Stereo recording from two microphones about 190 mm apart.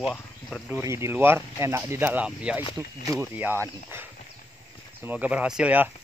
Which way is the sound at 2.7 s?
15° right (ahead or behind).